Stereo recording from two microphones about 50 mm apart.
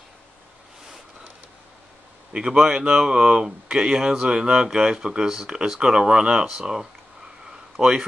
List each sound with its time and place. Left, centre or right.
2.3 s speech: centre